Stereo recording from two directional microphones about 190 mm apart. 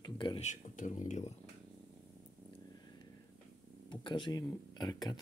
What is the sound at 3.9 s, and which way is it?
Speech, 25° left (ahead or behind).